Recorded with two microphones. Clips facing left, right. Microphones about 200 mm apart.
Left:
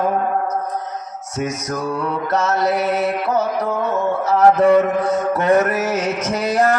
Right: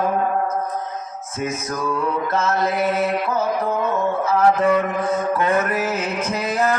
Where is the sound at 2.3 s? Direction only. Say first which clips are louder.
Left 5 dB; 75° left (ahead or behind).